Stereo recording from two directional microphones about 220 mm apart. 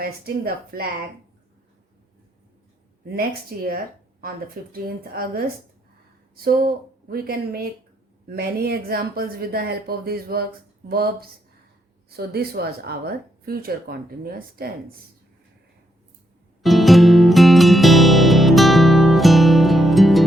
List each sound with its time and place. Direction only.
0.0 s speech: 45° right (ahead or behind)
3.1 s speech: 45° right (ahead or behind)
16.6 s music: centre (ahead or behind)